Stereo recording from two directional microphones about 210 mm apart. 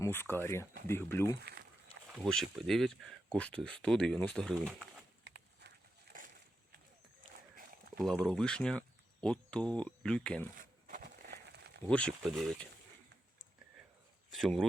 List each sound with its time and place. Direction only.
0.0 s speech: 10° left (ahead or behind)
1.4 s speech: 50° right (ahead or behind)
2.1 s speech: centre (ahead or behind)
5.2 s walk: 55° right (ahead or behind)
6.1 s a sound: 40° right (ahead or behind)
7.5 s walk: 40° right (ahead or behind)
8.0 s speech: 5° left (ahead or behind)
10.6 s a sound: 40° right (ahead or behind)
11.9 s speech: 5° left (ahead or behind)
14.3 s speech: centre (ahead or behind)